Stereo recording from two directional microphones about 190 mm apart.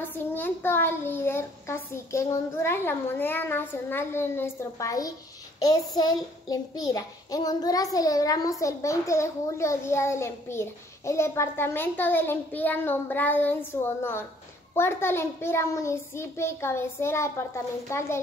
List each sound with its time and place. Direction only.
0.0 s a child's voice: 10° left (ahead or behind)